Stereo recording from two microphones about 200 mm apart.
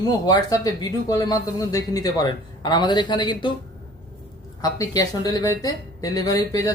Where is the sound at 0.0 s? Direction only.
20° left (ahead or behind).